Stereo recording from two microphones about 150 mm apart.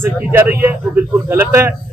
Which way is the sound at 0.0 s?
15° right (ahead or behind).